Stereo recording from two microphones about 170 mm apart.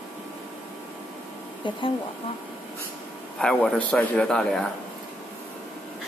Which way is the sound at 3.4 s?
5° left (ahead or behind).